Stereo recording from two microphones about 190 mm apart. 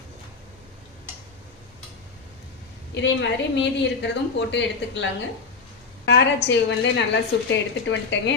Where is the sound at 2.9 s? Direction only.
70° left (ahead or behind).